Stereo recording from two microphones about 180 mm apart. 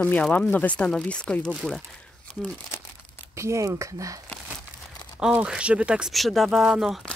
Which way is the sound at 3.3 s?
15° right (ahead or behind).